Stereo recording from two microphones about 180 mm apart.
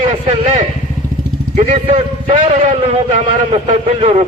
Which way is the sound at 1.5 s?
35° right (ahead or behind).